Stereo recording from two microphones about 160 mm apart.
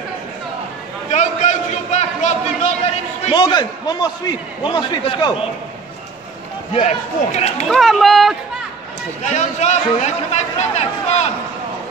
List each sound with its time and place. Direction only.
1.1 s a sound: 45° left (ahead or behind)
3.3 s a man's voice: 25° left (ahead or behind)
6.7 s a man's voice: 45° left (ahead or behind)
7.6 s speech: centre (ahead or behind)
9.2 s a man's voice: 45° left (ahead or behind)